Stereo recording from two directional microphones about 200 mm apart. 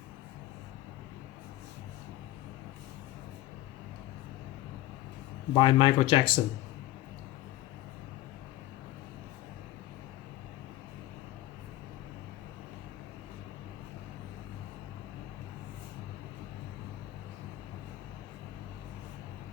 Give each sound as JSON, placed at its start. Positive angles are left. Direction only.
{"t": 5.5, "sound": "speech", "side_deg": 25}